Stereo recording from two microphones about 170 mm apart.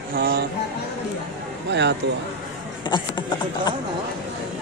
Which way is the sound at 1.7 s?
90° right.